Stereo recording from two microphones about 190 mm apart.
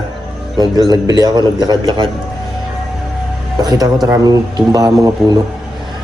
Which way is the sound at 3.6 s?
20° right (ahead or behind).